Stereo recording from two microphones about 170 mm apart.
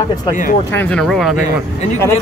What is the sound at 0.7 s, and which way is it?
Speech, 5° left (ahead or behind).